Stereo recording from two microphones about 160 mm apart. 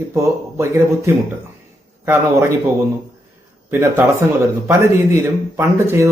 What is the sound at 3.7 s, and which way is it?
Speech, 15° right (ahead or behind).